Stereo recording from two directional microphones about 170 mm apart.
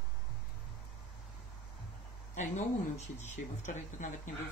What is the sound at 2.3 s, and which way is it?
Speech, 45° left (ahead or behind).